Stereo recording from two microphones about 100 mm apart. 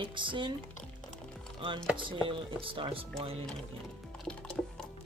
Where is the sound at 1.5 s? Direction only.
55° right (ahead or behind).